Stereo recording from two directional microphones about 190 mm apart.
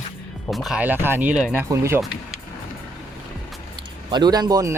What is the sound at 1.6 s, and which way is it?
Speech, 15° right (ahead or behind).